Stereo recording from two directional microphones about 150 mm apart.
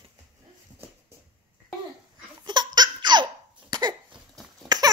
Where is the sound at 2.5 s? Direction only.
30° right (ahead or behind).